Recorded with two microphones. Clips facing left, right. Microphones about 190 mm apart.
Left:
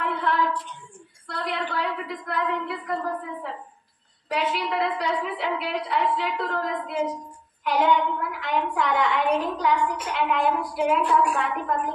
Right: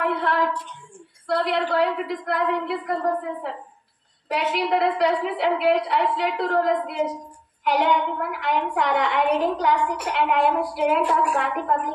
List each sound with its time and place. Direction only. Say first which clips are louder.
0.0 s a sound: right 3 dB; 70° right (ahead or behind)
1.3 s a woman's voice: right 7 dB; 70° right (ahead or behind)
4.3 s a woman's voice: right 4 dB; 70° right (ahead or behind)